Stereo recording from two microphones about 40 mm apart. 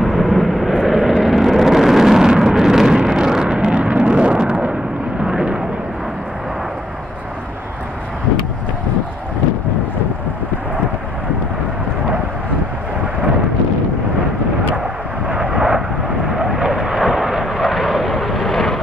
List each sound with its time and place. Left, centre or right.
0.0 s vehicle: centre
15.2 s vehicle: right; by 18.8 s centre